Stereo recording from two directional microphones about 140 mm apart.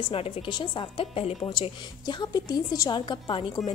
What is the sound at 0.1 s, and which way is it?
A woman's voice, 40° left (ahead or behind).